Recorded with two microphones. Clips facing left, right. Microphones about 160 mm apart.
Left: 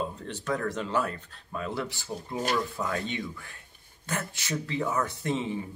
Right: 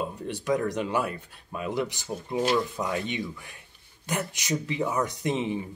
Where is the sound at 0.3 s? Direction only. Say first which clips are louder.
Right 6 dB; 15° right (ahead or behind).